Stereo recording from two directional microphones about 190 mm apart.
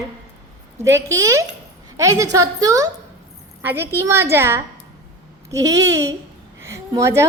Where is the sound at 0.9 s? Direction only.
15° right (ahead or behind).